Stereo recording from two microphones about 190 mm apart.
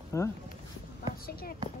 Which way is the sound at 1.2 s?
50° left (ahead or behind).